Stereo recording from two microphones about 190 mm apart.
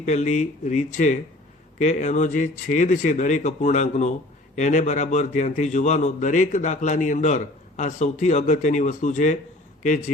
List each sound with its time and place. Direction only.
0.0 s a man's voice: 40° left (ahead or behind)